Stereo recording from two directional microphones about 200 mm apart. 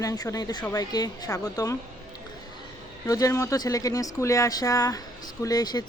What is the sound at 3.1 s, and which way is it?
A woman's voice, 15° left (ahead or behind).